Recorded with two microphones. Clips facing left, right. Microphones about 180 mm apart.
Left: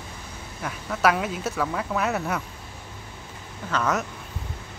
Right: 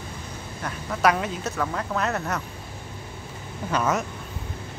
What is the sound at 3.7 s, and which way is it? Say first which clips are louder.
Speech: right 1 dB; 5° right (ahead or behind).